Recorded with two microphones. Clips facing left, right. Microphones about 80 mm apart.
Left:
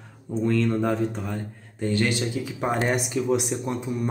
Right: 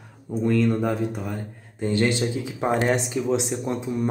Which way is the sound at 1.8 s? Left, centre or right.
Right.